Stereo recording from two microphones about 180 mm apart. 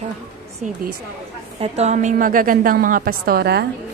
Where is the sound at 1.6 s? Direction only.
35° right (ahead or behind); by 3.6 s 60° right (ahead or behind).